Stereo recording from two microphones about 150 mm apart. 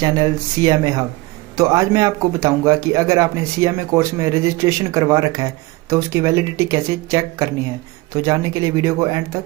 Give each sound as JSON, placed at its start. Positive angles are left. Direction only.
{"t": 0.0, "sound": "speech", "side_deg": -25}